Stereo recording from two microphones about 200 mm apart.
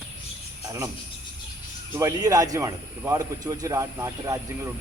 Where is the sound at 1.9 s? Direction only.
15° right (ahead or behind).